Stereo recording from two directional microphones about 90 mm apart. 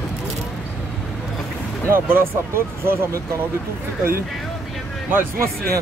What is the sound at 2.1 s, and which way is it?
Speech, 25° right (ahead or behind).